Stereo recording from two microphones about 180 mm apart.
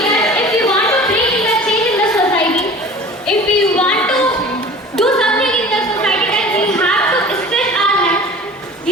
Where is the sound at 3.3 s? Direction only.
5° left (ahead or behind).